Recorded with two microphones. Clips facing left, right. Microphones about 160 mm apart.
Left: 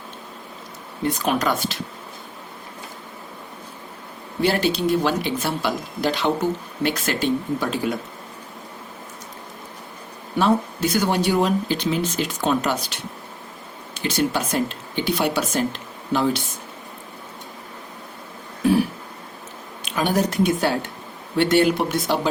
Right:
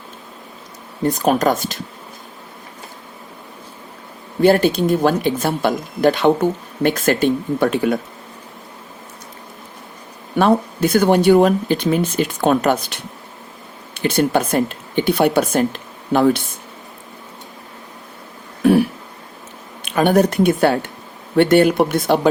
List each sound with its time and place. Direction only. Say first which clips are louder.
1.0 s speech: right 6 dB; 45° right (ahead or behind)
4.4 s speech: right 7 dB; 50° right (ahead or behind)
10.3 s speech: right 4 dB; 55° right (ahead or behind)
13.9 s speech: right 6 dB; 55° right (ahead or behind)
19.8 s speech: right 7 dB; 55° right (ahead or behind)